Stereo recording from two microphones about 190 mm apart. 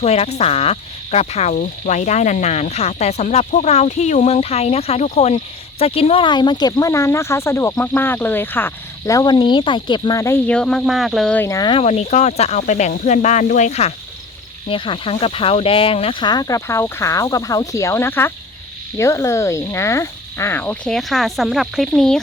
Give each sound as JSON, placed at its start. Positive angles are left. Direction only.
{"t": 0.0, "sound": "speech", "side_deg": 35}
{"t": 11.8, "sound": "speech", "side_deg": 35}